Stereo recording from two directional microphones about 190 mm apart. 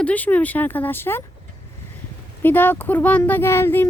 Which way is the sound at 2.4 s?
10° left (ahead or behind).